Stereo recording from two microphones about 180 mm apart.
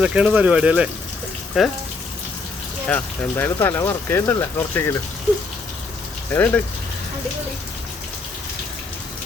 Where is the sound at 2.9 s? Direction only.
10° left (ahead or behind).